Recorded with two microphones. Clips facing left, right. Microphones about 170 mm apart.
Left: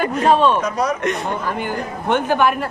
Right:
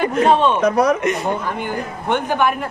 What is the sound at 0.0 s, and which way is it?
Speech, 25° right (ahead or behind).